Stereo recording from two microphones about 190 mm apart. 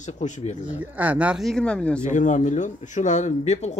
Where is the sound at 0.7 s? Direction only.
10° right (ahead or behind).